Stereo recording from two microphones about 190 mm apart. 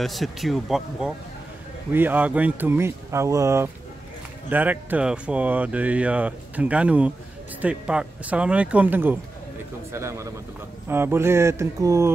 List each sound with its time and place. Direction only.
0.0 s speech: centre (ahead or behind); by 12.1 s 15° right (ahead or behind)